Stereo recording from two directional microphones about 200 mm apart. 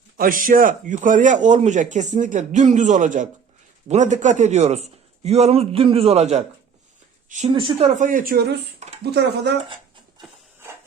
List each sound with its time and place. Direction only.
0.2 s a woman's voice: 45° right (ahead or behind); by 7.9 s 25° right (ahead or behind)
7.9 s speech: 40° right (ahead or behind)
8.8 s a sound: 35° right (ahead or behind)
9.6 s dog: 25° right (ahead or behind)